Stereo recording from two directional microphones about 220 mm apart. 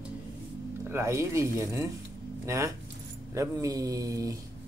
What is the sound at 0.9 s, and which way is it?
Speech, 10° right (ahead or behind).